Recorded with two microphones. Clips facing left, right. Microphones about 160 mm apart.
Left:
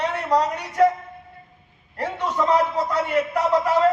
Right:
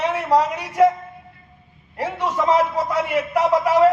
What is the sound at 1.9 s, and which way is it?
A man's voice, 10° right (ahead or behind).